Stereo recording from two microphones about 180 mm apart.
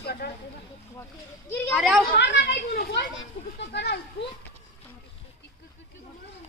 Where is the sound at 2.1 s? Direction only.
75° left (ahead or behind).